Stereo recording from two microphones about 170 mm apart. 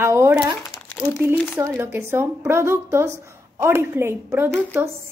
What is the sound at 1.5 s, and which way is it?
A woman's voice, 15° right (ahead or behind).